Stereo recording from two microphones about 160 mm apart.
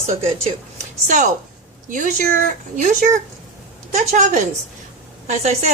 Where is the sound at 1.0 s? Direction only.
50° right (ahead or behind).